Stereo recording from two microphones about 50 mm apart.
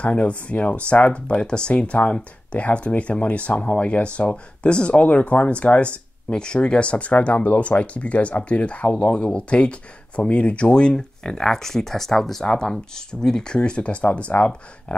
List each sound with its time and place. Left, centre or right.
0.0 s speech: left